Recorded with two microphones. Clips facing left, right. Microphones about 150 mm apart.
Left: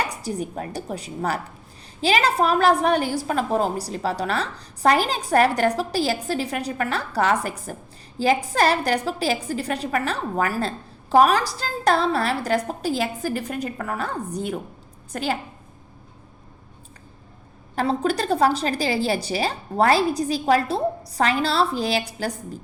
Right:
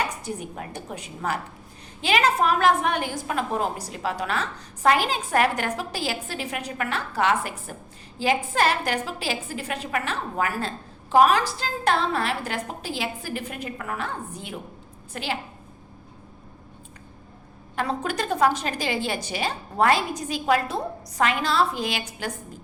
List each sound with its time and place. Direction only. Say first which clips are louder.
0.1 s a woman's voice: left 4 dB; 35° left (ahead or behind)
17.7 s a woman's voice: left 5 dB; 35° left (ahead or behind)